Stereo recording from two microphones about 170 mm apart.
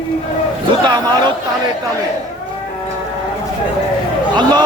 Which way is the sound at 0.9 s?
25° right (ahead or behind).